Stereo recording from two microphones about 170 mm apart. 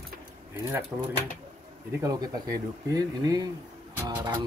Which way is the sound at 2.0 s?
20° right (ahead or behind).